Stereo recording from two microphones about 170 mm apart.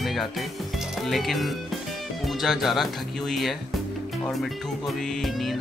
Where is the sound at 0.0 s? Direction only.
Centre (ahead or behind).